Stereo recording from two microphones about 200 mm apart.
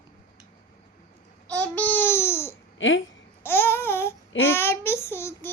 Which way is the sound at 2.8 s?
70° left (ahead or behind).